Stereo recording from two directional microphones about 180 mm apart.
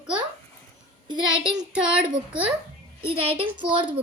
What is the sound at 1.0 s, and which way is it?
Speech, 25° right (ahead or behind).